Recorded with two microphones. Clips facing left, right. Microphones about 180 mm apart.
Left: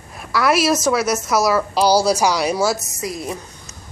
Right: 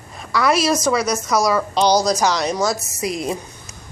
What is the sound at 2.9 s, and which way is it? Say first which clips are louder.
Speech: right 3 dB; 15° right (ahead or behind).